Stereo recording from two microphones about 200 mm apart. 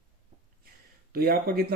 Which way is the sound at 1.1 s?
50° right (ahead or behind).